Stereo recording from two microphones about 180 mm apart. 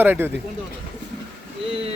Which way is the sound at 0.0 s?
10° right (ahead or behind).